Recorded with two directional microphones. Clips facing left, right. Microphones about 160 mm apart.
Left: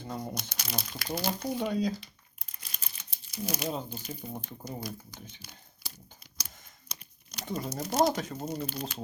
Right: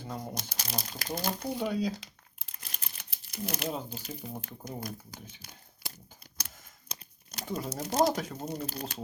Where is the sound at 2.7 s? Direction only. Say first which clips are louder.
Right 1 dB; 60° right (ahead or behind).